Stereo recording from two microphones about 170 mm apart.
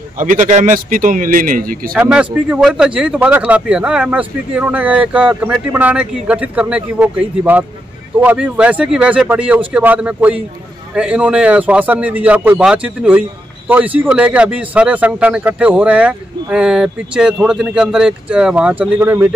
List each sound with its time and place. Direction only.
0.2 s speech: 45° right (ahead or behind)
2.0 s speech: 5° right (ahead or behind)